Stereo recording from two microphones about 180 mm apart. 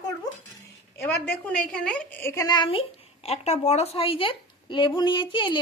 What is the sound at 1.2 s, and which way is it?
A woman's voice, 5° left (ahead or behind).